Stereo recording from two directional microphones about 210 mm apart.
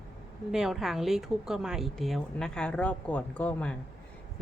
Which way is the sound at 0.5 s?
Centre (ahead or behind).